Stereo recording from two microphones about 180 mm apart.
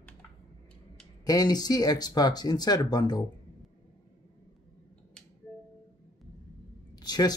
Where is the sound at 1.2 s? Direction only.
20° left (ahead or behind).